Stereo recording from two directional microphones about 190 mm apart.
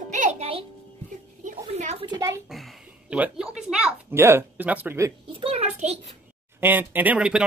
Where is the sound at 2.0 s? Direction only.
20° right (ahead or behind).